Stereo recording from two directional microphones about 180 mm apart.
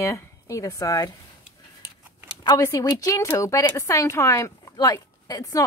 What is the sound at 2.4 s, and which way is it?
Speech, 20° left (ahead or behind).